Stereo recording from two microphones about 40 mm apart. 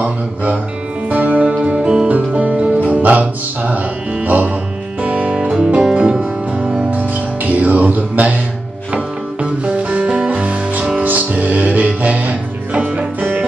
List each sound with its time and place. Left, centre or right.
1.1 s music: right
1.8 s music: right
2.0 s music: right
5.0 s music: right
5.3 s music: right
8.9 s music: right
11.0 s music: right